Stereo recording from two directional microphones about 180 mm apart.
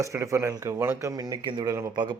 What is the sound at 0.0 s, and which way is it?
A man's voice, 15° right (ahead or behind).